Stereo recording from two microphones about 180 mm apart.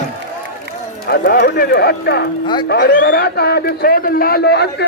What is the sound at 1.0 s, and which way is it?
A man's voice, 60° left (ahead or behind).